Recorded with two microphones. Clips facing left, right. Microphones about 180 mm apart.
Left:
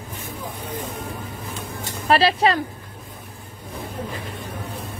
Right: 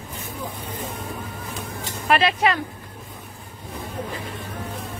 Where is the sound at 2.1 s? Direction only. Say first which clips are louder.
Left 2 dB; 35° left (ahead or behind).